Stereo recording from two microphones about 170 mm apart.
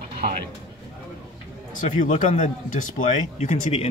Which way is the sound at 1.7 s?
50° left (ahead or behind).